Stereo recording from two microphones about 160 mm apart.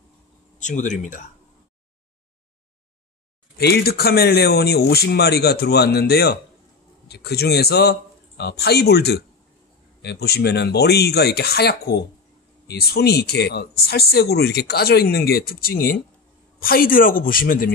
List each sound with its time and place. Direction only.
0.6 s speech: 50° left (ahead or behind)
3.5 s speech: 85° left
7.1 s a man's voice: 90° left; by 17.7 s 65° left (ahead or behind)